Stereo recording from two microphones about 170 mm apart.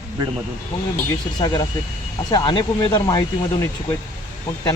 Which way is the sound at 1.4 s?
25° left (ahead or behind).